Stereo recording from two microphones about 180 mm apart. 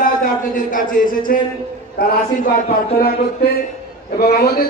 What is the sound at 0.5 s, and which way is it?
A man's voice, 50° left (ahead or behind).